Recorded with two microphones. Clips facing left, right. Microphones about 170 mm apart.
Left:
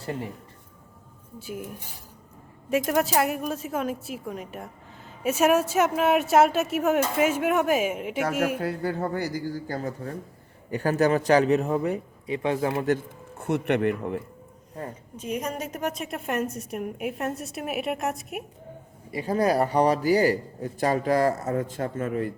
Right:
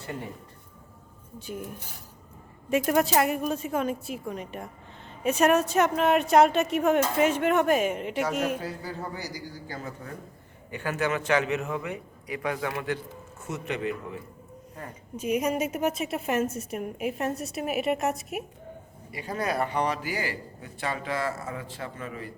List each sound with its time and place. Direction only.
1.4 s a woman's voice: 5° left (ahead or behind)
8.5 s a man's voice: 60° left (ahead or behind); by 12.8 s 30° left (ahead or behind)
13.4 s speech: 60° left (ahead or behind)
15.1 s a woman's voice: 10° right (ahead or behind)
19.1 s a man's voice: 40° left (ahead or behind)